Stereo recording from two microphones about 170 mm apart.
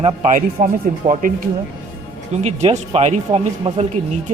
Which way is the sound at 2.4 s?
40° right (ahead or behind).